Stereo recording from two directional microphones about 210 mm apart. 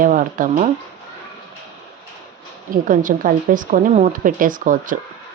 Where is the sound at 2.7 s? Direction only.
40° right (ahead or behind).